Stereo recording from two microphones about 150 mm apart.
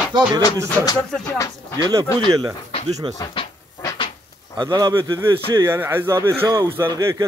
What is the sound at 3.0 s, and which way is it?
Speech, 35° right (ahead or behind).